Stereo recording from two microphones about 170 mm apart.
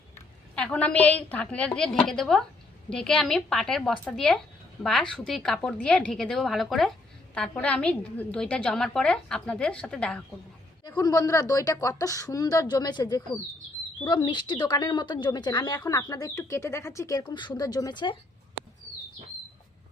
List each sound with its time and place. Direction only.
0.5 s a woman's voice: 5° left (ahead or behind)
10.8 s a woman's voice: 25° left (ahead or behind)